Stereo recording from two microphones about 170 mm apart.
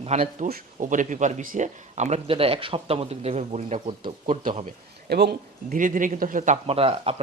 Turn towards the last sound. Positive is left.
turn(degrees=-35)  # may be behind; listen again after turning